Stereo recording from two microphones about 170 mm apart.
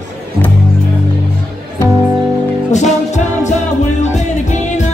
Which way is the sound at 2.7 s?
45° left (ahead or behind).